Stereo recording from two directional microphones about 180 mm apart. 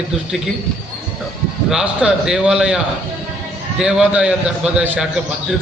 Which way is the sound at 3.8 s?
5° right (ahead or behind).